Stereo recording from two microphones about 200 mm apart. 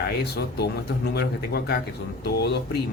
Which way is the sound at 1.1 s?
55° left (ahead or behind).